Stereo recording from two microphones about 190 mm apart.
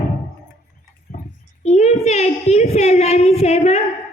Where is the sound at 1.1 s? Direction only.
50° left (ahead or behind).